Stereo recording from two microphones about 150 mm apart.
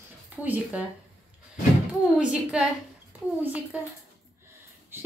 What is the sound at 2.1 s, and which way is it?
A woman's voice, 5° right (ahead or behind).